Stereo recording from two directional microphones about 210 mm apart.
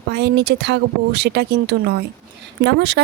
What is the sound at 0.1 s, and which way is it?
Speech, 55° right (ahead or behind).